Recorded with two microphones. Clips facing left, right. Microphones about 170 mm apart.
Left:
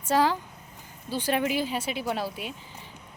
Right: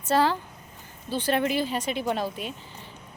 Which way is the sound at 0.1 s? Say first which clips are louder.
Right 1 dB; 10° left (ahead or behind).